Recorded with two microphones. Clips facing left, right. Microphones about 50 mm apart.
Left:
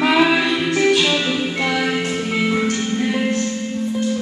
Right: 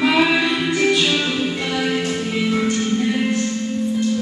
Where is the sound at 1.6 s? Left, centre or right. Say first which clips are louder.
Left 1 dB; left.